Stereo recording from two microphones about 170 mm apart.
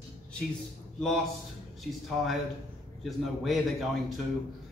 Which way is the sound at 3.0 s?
Centre (ahead or behind).